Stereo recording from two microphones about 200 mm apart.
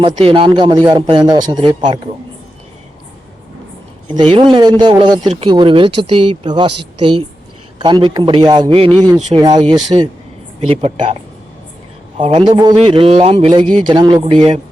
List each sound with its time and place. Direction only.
0.0 s a man's voice: 30° right (ahead or behind)
4.1 s a man's voice: 25° right (ahead or behind)